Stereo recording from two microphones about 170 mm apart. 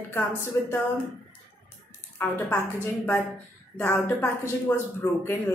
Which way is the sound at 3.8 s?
10° left (ahead or behind).